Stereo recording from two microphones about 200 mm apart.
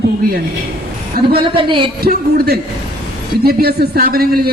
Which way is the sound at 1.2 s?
50° right (ahead or behind).